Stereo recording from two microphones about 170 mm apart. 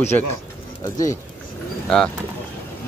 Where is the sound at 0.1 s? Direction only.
15° left (ahead or behind).